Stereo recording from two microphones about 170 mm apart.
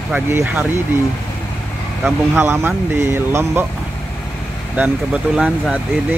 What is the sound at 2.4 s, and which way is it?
Speech, 15° right (ahead or behind).